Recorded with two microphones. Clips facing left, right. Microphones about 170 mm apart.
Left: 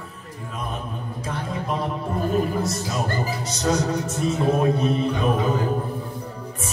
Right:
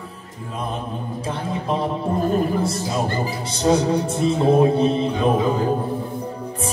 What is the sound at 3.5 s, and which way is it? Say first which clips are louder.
Music: right 6 dB; 30° right (ahead or behind).